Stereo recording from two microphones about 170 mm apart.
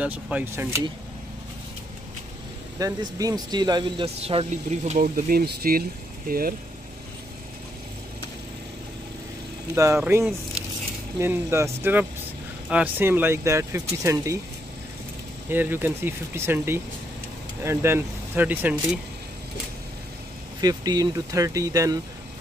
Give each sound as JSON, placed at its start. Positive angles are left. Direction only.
{"t": 0.0, "sound": "speech", "side_deg": -10}
{"t": 2.8, "sound": "speech", "side_deg": -20}
{"t": 4.5, "sound": "speech", "side_deg": -45}
{"t": 9.8, "sound": "speech", "side_deg": -15}
{"t": 15.5, "sound": "speech", "side_deg": -10}
{"t": 20.6, "sound": "speech", "side_deg": -20}